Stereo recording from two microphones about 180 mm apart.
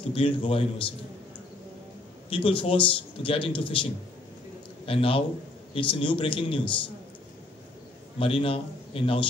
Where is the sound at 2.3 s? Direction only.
30° left (ahead or behind).